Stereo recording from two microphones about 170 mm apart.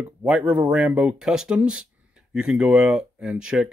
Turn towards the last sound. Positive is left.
turn(degrees=-5)  # may be behind; listen again after turning